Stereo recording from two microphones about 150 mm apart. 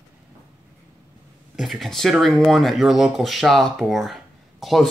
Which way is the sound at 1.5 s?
Centre (ahead or behind).